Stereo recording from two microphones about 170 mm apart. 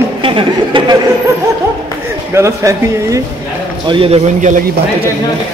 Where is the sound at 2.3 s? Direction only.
15° right (ahead or behind).